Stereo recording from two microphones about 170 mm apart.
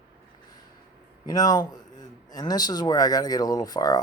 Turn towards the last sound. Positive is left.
turn(degrees=20)  # may be behind; listen again after turning